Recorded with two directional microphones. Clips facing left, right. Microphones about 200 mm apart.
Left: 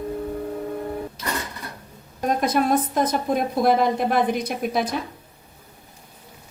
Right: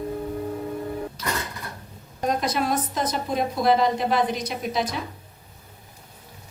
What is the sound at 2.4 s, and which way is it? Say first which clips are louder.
A woman's voice: left 4 dB; 55° left (ahead or behind).